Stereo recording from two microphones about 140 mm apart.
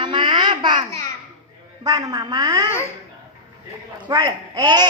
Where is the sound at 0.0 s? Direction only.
35° right (ahead or behind).